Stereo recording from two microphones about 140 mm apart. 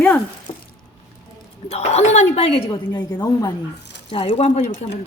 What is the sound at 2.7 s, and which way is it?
Speech, 30° left (ahead or behind).